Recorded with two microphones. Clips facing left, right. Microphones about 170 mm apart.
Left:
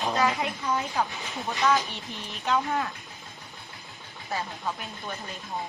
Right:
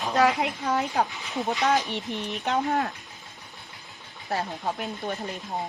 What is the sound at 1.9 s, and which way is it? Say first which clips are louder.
Speech: right 8 dB; 65° right (ahead or behind).